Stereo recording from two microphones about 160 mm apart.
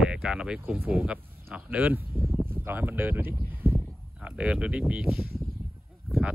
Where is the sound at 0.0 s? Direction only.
5° right (ahead or behind).